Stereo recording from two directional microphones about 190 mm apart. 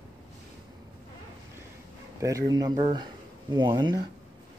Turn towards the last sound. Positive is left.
turn(degrees=-25)  # may be behind; listen again after turning